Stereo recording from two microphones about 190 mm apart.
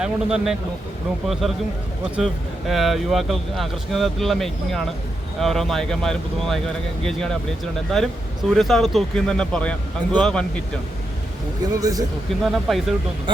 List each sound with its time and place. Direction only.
0.0 s speech: 5° right (ahead or behind)
11.7 s speech: 20° right (ahead or behind)
12.3 s speech: centre (ahead or behind)